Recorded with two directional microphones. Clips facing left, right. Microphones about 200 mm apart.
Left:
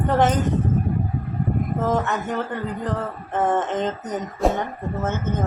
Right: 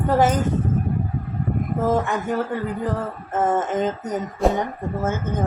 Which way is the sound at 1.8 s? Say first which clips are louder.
Right 3 dB; 10° right (ahead or behind).